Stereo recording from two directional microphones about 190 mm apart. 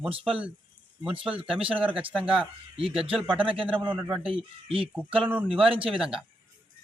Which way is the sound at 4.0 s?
Centre (ahead or behind).